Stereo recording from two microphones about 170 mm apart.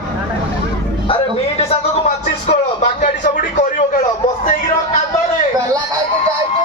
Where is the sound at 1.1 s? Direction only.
35° left (ahead or behind).